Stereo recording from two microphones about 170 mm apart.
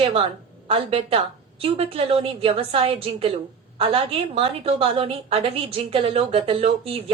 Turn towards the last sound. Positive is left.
turn(degrees=-35)  # may be behind; listen again after turning